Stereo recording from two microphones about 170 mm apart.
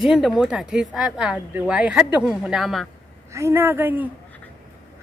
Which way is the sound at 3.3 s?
15° right (ahead or behind).